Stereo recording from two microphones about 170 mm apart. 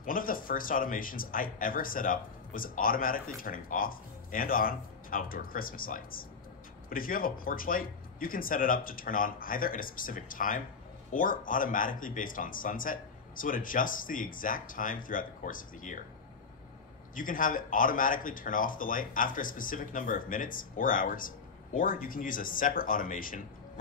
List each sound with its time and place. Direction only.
0.0 s speech: 55° left (ahead or behind)
17.1 s speech: 55° left (ahead or behind)